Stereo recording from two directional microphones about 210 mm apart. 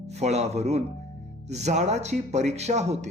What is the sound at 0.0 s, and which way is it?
Speech, 30° right (ahead or behind).